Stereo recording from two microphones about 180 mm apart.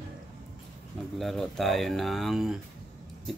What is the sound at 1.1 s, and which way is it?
Speech, centre (ahead or behind).